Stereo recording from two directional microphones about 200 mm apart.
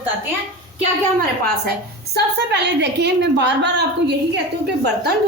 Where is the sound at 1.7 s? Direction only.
55° right (ahead or behind).